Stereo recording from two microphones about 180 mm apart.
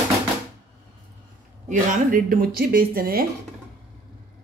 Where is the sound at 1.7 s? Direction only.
45° right (ahead or behind).